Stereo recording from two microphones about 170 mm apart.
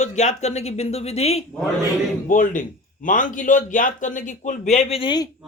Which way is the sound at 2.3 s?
50° left (ahead or behind).